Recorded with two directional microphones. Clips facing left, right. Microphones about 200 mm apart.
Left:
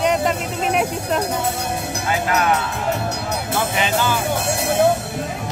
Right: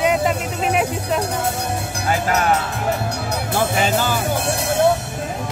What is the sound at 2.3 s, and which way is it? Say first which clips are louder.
Speech: even; 40° right (ahead or behind).